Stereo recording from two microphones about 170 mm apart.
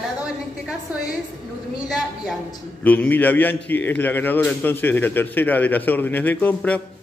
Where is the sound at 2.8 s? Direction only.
10° left (ahead or behind).